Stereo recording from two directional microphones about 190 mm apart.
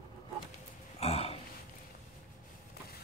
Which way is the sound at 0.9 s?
35° left (ahead or behind).